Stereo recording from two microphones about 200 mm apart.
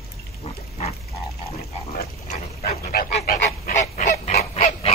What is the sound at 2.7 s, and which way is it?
Goose, 45° left (ahead or behind).